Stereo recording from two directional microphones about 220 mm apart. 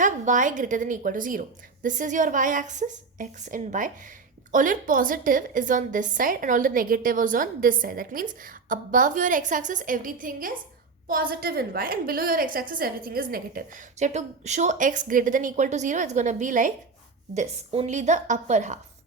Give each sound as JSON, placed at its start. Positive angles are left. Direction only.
{"t": 0.0, "sound": "a woman's voice", "side_deg": -35}